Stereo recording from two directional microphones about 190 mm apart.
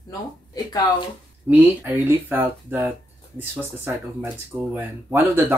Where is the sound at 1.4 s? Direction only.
10° right (ahead or behind).